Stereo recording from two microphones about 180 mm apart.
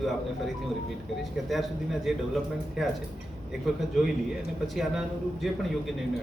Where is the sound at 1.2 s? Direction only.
Centre (ahead or behind).